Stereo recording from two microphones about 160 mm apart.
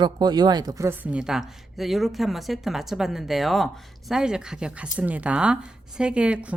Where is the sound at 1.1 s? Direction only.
5° right (ahead or behind).